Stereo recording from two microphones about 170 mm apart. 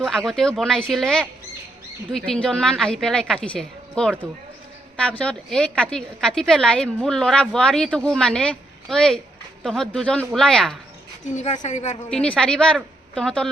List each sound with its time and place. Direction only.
0.0 s a woman's voice: centre (ahead or behind)
11.3 s a woman's voice: 45° left (ahead or behind)
12.0 s a woman's voice: 5° left (ahead or behind)